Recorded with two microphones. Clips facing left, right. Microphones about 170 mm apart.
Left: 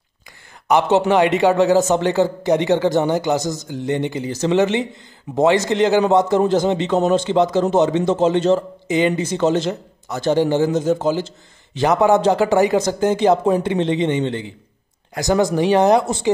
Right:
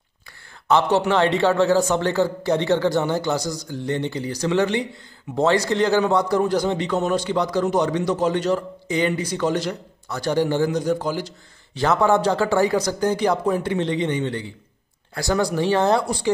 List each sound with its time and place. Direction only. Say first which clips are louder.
0.7 s a man's voice: left 3 dB; 15° left (ahead or behind)